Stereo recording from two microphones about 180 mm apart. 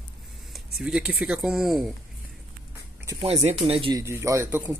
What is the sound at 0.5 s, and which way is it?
Speech, 5° right (ahead or behind).